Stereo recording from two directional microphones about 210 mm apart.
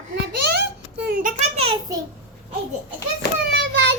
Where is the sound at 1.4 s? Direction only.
30° right (ahead or behind).